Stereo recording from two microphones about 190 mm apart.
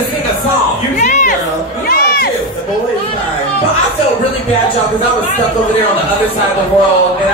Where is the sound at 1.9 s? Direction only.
55° left (ahead or behind).